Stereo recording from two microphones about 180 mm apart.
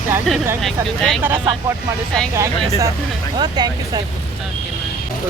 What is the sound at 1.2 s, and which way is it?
Speech, 10° right (ahead or behind).